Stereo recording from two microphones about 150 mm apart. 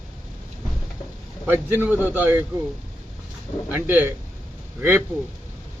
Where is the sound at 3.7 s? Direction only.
15° right (ahead or behind).